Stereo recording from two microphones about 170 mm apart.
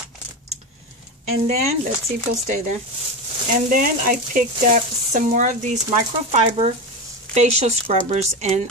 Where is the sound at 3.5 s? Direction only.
50° right (ahead or behind).